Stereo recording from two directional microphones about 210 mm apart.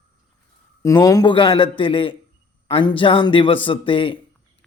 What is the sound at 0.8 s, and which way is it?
A man's voice, 15° left (ahead or behind).